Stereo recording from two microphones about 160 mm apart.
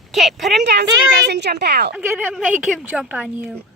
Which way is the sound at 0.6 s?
90° right.